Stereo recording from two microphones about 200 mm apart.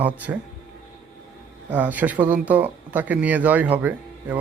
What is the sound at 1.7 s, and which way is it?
Speech, 10° right (ahead or behind).